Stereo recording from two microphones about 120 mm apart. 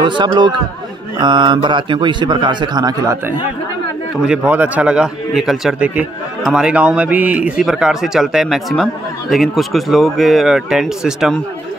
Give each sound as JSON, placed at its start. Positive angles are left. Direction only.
{"t": 0.0, "sound": "a man's voice", "side_deg": -40}
{"t": 4.3, "sound": "a man's voice", "side_deg": -15}